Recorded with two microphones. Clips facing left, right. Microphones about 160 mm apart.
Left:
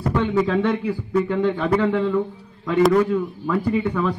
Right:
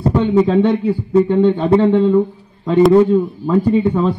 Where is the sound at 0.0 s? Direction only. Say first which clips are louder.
Right 7 dB; 30° right (ahead or behind).